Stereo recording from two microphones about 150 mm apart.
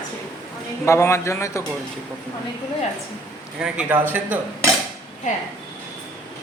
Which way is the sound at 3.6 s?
10° right (ahead or behind).